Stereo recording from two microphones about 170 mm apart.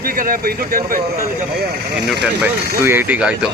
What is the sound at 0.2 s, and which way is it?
Speech, 55° right (ahead or behind).